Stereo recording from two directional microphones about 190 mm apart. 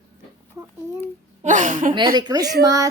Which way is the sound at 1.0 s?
40° right (ahead or behind).